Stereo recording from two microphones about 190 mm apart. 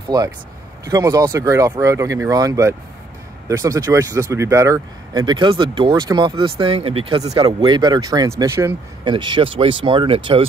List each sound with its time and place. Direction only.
0.8 s speech: 20° right (ahead or behind)
9.0 s speech: 25° right (ahead or behind)